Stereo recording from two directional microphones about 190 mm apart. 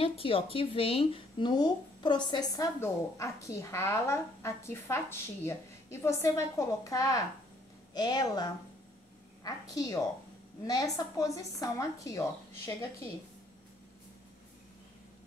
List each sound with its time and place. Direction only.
0.0 s a woman's voice: 30° left (ahead or behind)